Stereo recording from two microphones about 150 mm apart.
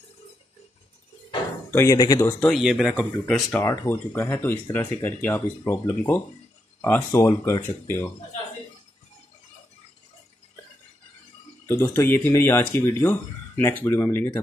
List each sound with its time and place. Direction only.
1.7 s speech: 20° left (ahead or behind)
2.5 s speech: centre (ahead or behind)
3.5 s speech: 15° left (ahead or behind)
11.6 s speech: 15° left (ahead or behind)